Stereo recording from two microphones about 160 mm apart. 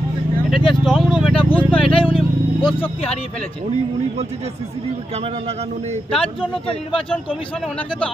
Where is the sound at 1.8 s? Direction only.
35° left (ahead or behind).